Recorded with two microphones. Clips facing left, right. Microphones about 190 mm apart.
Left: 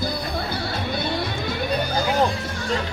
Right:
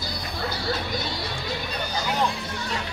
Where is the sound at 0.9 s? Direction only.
55° left (ahead or behind).